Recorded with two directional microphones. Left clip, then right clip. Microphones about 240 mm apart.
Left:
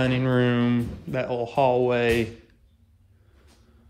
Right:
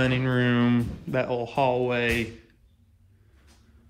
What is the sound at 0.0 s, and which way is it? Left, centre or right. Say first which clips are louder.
Speech: left 2 dB; centre.